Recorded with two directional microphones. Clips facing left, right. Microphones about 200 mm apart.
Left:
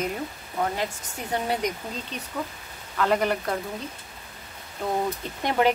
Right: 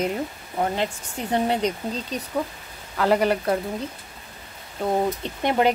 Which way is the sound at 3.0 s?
30° right (ahead or behind).